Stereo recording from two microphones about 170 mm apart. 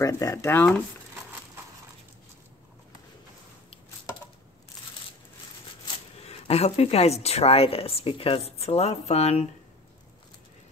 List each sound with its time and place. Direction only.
0.0 s speech: 20° left (ahead or behind)
6.2 s speech: 40° left (ahead or behind)